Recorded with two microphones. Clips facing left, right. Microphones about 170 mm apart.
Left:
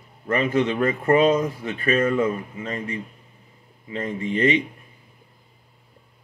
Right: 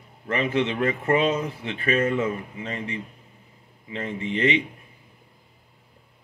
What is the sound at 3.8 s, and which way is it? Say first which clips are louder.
Speech: left 3 dB; 40° left (ahead or behind).